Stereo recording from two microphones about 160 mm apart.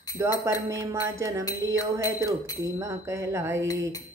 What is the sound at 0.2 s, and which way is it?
Music, 20° right (ahead or behind).